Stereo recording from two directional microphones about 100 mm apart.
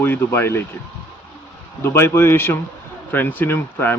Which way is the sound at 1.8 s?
25° left (ahead or behind).